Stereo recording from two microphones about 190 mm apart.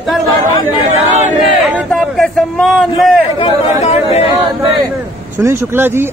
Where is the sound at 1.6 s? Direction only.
5° right (ahead or behind).